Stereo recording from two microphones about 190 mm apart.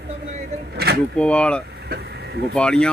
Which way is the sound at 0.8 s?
55° right (ahead or behind).